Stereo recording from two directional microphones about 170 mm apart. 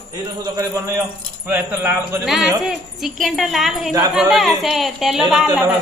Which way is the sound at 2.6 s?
Centre (ahead or behind).